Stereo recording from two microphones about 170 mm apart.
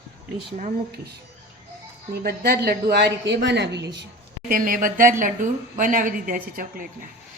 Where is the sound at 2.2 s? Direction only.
65° right (ahead or behind); by 4.1 s 90° right.